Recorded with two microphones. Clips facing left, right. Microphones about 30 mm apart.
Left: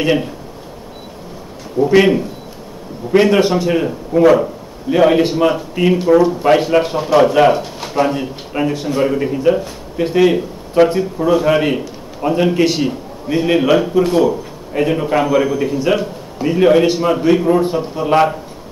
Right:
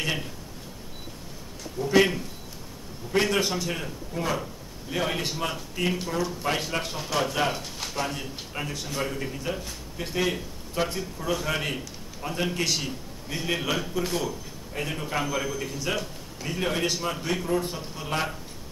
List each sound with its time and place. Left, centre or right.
0.0 s a man's voice: left
1.8 s a man's voice: left
4.1 s speech: left
4.4 s a man's voice: left
6.6 s a man's voice: left
18.1 s a man's voice: left